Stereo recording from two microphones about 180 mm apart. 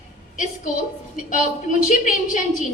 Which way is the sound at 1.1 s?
45° left (ahead or behind).